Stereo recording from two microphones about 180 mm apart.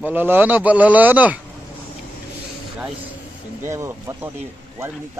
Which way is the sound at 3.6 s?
15° right (ahead or behind).